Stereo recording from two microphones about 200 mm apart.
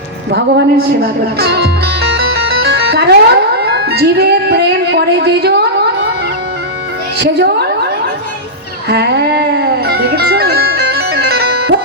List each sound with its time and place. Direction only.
0.3 s speech: 55° right (ahead or behind)
7.2 s a woman's voice: 55° right (ahead or behind)
8.9 s music: 55° right (ahead or behind)